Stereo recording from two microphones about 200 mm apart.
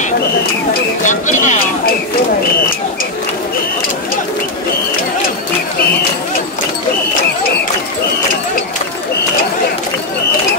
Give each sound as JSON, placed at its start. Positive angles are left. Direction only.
{"t": 1.0, "sound": "speech", "side_deg": 40}